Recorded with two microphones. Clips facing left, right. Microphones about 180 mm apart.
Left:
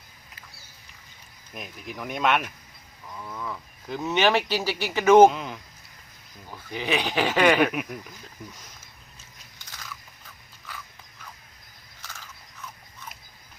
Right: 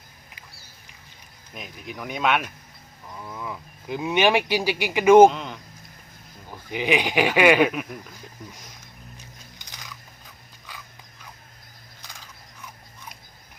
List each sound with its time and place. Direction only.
1.5 s speech: centre (ahead or behind)
3.1 s speech: 10° right (ahead or behind)
5.3 s a sound: 5° left (ahead or behind)
6.5 s speech: 15° right (ahead or behind)
7.7 s speech: 5° left (ahead or behind)
9.1 s music: 15° right (ahead or behind)
12.0 s biting: 15° right (ahead or behind)